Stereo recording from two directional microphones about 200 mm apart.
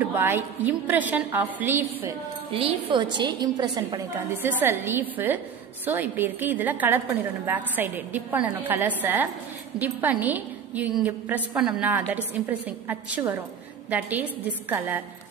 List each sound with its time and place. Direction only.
0.0 s a woman's voice: 10° right (ahead or behind)
2.5 s a woman's voice: 25° right (ahead or behind); by 15.0 s 10° right (ahead or behind)